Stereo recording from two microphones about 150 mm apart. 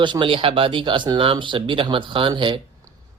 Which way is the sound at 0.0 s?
35° right (ahead or behind).